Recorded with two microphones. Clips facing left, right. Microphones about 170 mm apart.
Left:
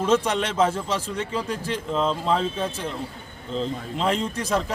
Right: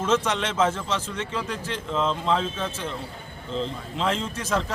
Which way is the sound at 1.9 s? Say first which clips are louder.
Left 1 dB; 35° left (ahead or behind).